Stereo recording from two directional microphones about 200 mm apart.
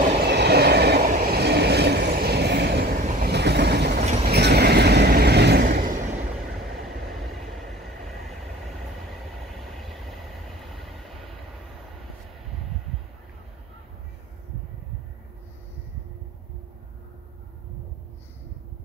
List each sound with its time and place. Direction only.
0.2 s train: 55° right (ahead or behind)
3.0 s train: 35° right (ahead or behind)
3.3 s train: 55° right (ahead or behind)
4.0 s vehicle: 35° right (ahead or behind)
4.3 s vehicle: 55° right (ahead or behind)
9.6 s train: centre (ahead or behind)